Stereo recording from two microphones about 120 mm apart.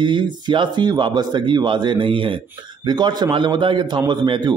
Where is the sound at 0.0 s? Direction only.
40° right (ahead or behind).